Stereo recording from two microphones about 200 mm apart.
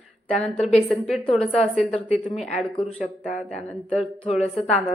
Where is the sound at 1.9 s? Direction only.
30° left (ahead or behind).